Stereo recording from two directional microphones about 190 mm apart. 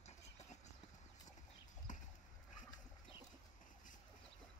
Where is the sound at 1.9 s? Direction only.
40° left (ahead or behind).